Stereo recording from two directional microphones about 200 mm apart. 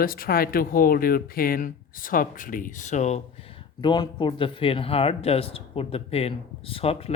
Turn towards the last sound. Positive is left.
turn(degrees=30)  # may be behind; listen again after turning